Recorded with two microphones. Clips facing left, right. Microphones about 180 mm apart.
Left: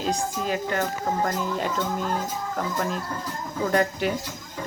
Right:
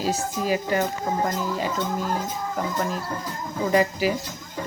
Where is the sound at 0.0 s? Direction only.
5° right (ahead or behind).